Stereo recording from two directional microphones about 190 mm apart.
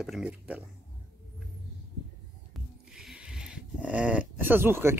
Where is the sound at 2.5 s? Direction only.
Centre (ahead or behind).